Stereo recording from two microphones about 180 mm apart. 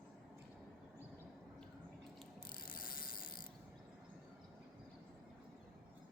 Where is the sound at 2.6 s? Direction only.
55° left (ahead or behind).